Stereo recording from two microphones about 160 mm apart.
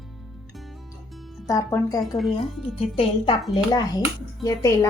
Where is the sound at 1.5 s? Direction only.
20° left (ahead or behind).